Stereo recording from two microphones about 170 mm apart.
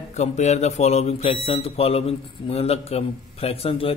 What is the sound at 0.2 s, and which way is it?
A man's voice, 40° left (ahead or behind).